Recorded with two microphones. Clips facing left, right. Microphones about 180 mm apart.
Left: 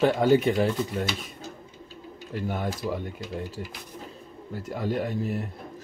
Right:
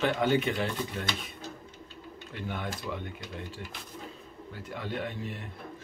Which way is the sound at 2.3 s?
40° left (ahead or behind).